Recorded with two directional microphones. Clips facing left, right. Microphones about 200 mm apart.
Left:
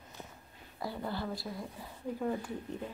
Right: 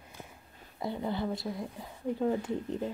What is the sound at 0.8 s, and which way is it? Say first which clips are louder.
Speech: right 4 dB; 20° right (ahead or behind).